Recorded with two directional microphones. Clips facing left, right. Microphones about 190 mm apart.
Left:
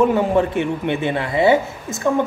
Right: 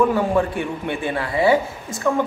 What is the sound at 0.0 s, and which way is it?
Speech, 20° left (ahead or behind).